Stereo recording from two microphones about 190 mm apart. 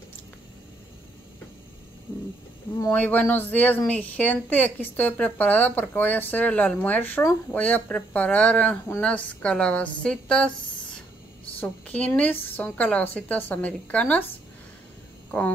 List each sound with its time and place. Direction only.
2.8 s speech: 10° left (ahead or behind)